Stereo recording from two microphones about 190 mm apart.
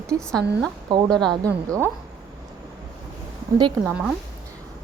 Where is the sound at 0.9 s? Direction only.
25° right (ahead or behind).